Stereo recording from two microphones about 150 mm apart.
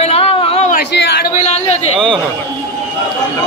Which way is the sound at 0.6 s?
65° left (ahead or behind).